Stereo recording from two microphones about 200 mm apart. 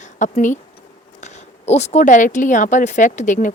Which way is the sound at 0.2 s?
40° left (ahead or behind).